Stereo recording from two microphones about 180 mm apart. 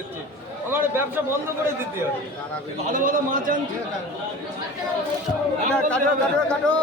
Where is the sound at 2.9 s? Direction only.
50° right (ahead or behind).